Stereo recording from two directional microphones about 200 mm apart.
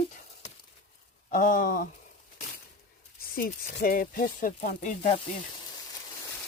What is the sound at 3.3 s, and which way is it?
Speech, 50° left (ahead or behind).